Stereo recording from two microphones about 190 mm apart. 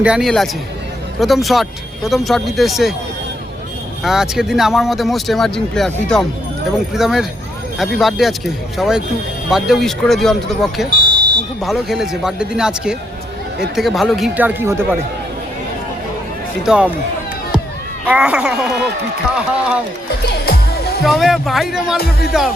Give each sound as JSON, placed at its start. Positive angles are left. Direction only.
{"t": 0.0, "sound": "speech", "side_deg": -5}
{"t": 4.0, "sound": "speech", "side_deg": 0}
{"t": 16.6, "sound": "speech", "side_deg": -5}
{"t": 18.0, "sound": "speech", "side_deg": -5}
{"t": 20.3, "sound": "music", "side_deg": 55}
{"t": 21.0, "sound": "speech", "side_deg": 0}